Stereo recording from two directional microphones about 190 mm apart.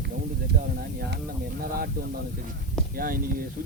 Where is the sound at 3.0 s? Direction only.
50° right (ahead or behind).